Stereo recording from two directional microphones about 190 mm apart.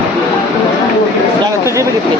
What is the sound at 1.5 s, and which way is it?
Speech, 15° right (ahead or behind).